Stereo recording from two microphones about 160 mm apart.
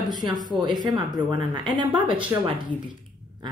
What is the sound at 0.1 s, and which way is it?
Speech, 25° right (ahead or behind).